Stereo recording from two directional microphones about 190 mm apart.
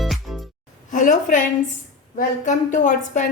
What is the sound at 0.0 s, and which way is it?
Music, centre (ahead or behind).